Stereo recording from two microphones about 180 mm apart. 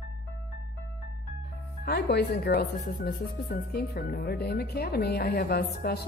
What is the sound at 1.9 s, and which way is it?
Speech, 65° left (ahead or behind).